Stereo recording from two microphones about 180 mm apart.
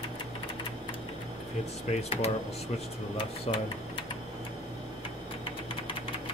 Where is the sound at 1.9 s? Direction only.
35° left (ahead or behind).